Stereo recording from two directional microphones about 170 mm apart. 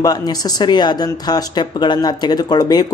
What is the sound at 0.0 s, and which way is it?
Speech, 25° left (ahead or behind).